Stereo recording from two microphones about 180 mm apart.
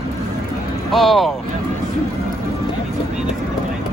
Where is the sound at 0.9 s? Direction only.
Centre (ahead or behind).